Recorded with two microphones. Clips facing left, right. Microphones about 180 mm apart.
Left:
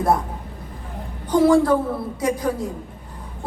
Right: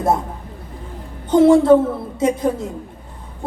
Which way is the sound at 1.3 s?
25° right (ahead or behind).